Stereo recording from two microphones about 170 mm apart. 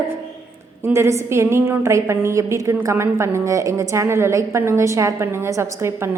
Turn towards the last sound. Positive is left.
turn(degrees=-15)  # may be behind; listen again after turning